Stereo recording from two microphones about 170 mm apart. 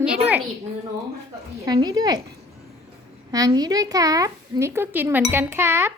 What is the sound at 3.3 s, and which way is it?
Speech, 20° right (ahead or behind).